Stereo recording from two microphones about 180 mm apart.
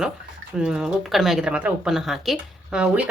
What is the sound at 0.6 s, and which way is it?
Speech, 5° right (ahead or behind).